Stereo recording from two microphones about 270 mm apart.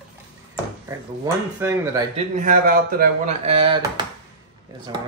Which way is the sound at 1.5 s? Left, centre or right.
Centre.